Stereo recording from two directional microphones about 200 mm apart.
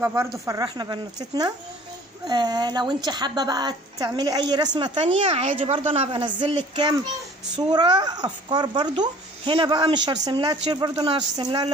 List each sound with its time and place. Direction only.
0.0 s speech: 15° right (ahead or behind)